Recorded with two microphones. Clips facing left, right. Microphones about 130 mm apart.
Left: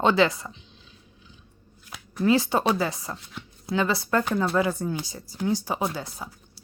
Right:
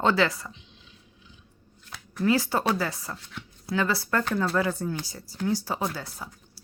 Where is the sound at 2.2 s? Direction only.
20° left (ahead or behind).